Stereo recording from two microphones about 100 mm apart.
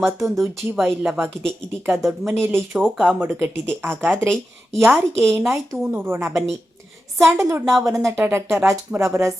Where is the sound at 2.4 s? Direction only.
25° right (ahead or behind).